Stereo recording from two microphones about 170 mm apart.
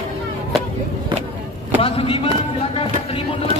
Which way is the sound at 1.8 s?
35° left (ahead or behind).